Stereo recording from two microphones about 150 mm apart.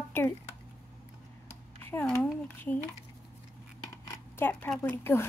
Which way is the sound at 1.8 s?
15° left (ahead or behind).